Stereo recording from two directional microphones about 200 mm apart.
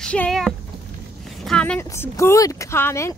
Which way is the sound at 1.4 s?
5° left (ahead or behind).